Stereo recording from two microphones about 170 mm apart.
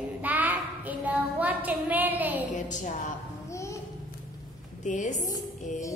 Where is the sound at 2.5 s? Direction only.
45° left (ahead or behind).